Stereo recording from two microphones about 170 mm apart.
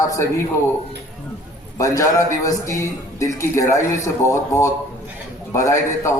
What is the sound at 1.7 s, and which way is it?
Speech, 20° left (ahead or behind).